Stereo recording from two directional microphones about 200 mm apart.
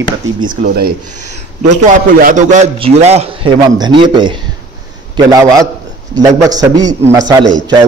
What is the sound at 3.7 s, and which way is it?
A man's voice, 20° right (ahead or behind).